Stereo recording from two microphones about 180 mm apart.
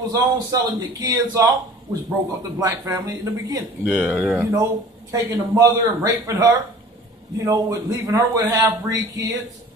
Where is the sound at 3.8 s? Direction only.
5° right (ahead or behind).